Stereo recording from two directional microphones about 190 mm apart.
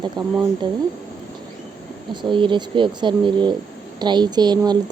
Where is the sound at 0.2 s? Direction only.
20° right (ahead or behind).